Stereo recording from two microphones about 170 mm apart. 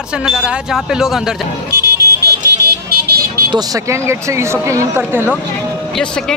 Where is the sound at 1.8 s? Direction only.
65° right (ahead or behind).